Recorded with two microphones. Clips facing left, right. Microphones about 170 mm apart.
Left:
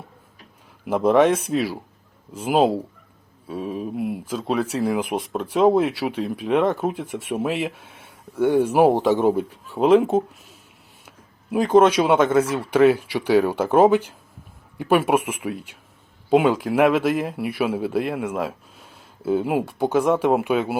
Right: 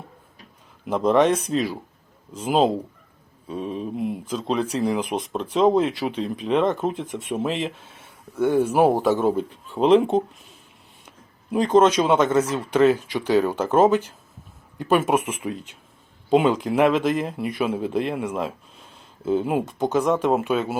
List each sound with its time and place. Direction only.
0.9 s speech: 10° left (ahead or behind)
11.5 s speech: 10° left (ahead or behind)